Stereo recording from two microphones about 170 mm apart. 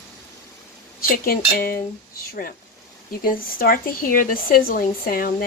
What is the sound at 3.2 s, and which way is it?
Speech, 60° left (ahead or behind).